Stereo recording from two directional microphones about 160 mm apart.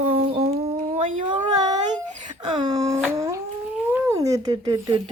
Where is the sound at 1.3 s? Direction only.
25° right (ahead or behind).